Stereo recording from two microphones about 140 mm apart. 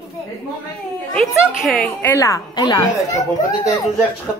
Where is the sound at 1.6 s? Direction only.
Centre (ahead or behind).